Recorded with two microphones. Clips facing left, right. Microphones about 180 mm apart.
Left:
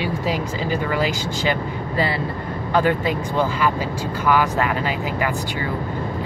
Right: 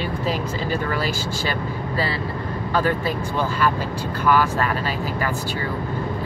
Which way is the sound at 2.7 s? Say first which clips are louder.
Left 3 dB; 20° left (ahead or behind).